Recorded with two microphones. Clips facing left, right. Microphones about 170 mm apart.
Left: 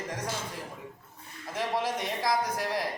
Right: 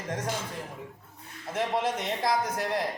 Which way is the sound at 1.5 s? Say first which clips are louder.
Right 2 dB; 20° right (ahead or behind).